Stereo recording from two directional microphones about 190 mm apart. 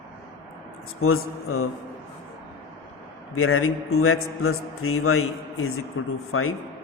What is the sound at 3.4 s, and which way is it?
A man's voice, 90° left.